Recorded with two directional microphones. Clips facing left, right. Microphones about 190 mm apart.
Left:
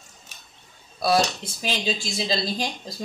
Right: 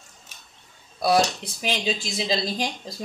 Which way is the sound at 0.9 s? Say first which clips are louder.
Right 1 dB; 15° right (ahead or behind).